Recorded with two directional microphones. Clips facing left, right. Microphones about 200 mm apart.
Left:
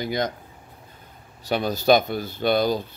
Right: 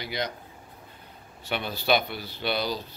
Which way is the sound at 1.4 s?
40° left (ahead or behind).